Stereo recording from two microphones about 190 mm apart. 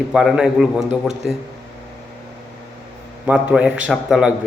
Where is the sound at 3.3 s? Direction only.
5° right (ahead or behind).